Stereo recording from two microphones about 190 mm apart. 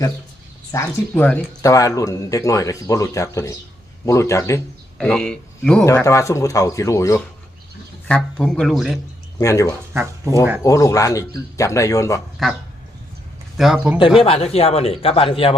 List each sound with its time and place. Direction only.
0.7 s speech: 10° left (ahead or behind)
4.9 s a man's voice: 5° left (ahead or behind)
5.8 s speech: 15° left (ahead or behind)
8.0 s a man's voice: 5° left (ahead or behind)
9.4 s speech: 15° left (ahead or behind)
9.9 s speech: 15° right (ahead or behind)
10.6 s speech: 15° left (ahead or behind)
12.4 s a man's voice: centre (ahead or behind)
13.6 s a man's voice: 5° right (ahead or behind)
14.3 s speech: 30° left (ahead or behind)